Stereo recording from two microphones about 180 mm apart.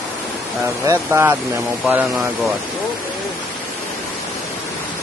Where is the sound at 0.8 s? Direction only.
15° right (ahead or behind).